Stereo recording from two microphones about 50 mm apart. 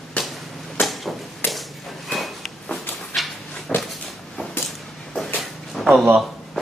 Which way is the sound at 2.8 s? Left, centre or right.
Left.